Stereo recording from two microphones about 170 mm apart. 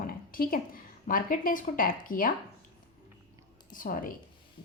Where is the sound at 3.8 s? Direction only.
55° left (ahead or behind).